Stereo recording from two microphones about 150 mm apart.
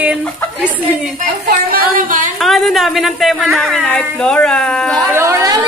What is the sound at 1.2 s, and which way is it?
Speech, 75° right (ahead or behind).